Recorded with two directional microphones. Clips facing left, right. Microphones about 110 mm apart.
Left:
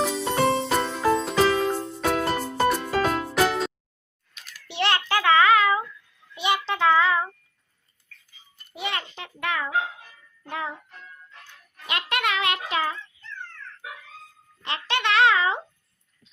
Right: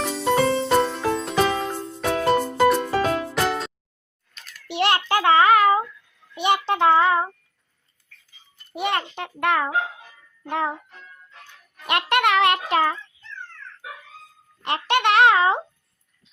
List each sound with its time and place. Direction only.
0.0 s jingle bell: centre (ahead or behind)
0.4 s music: 30° left (ahead or behind)
0.7 s music: centre (ahead or behind)
4.8 s child singing: 40° right (ahead or behind)
8.7 s a child's voice: 55° right (ahead or behind)
10.5 s music: 55° right (ahead or behind)
11.9 s a sound: 65° right (ahead or behind)
12.5 s child singing: 45° right (ahead or behind)
14.6 s a sound: 55° right (ahead or behind)